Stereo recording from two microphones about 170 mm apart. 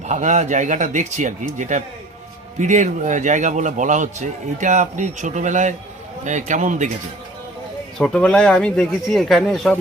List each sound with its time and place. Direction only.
0.0 s a man's voice: 45° right (ahead or behind)
7.9 s speech: 5° left (ahead or behind)